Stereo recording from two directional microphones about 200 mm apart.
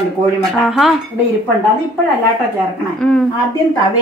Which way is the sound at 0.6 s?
Centre (ahead or behind).